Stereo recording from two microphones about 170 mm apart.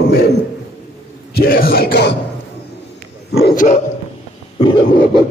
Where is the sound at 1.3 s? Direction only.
60° left (ahead or behind).